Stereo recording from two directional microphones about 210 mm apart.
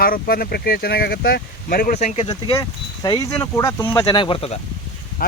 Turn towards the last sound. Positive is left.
turn(degrees=45)  # may be behind; listen again after turning